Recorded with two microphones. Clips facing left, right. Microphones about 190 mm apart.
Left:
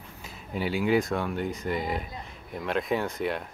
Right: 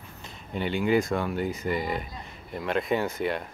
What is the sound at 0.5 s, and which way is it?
Speech, 5° left (ahead or behind).